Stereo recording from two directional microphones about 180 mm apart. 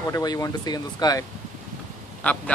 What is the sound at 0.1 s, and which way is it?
Speech, 20° left (ahead or behind).